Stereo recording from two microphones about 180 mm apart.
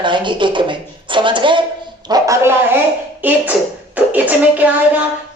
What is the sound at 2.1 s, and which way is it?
Music, 20° right (ahead or behind).